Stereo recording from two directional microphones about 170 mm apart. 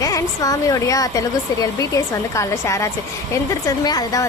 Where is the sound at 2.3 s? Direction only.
15° left (ahead or behind).